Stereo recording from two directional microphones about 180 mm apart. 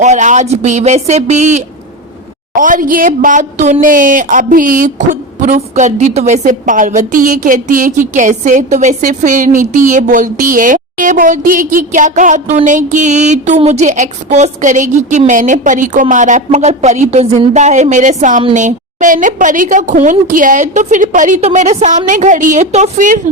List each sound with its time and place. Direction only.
0.0 s a woman's voice: 40° right (ahead or behind)